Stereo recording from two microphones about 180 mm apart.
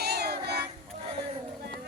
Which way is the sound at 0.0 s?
60° right (ahead or behind).